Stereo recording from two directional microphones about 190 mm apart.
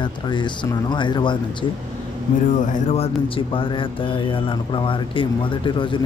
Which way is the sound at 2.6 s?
40° left (ahead or behind).